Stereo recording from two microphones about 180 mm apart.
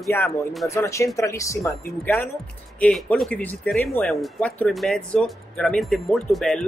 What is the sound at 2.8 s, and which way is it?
Speech, 5° left (ahead or behind).